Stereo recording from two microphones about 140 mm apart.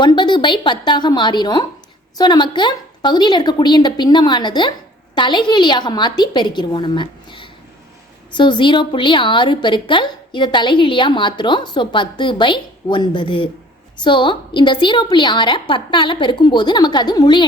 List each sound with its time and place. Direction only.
0.0 s a woman's voice: 35° left (ahead or behind)